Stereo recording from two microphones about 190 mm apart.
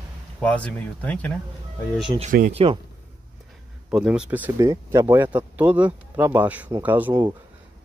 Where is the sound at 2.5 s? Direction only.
30° right (ahead or behind).